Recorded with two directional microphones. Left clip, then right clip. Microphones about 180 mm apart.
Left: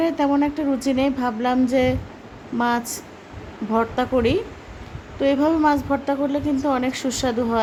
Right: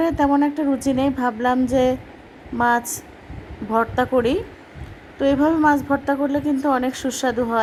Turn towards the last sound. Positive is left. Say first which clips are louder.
# right 1 dB
turn(degrees=-10)  # may be behind; listen again after turning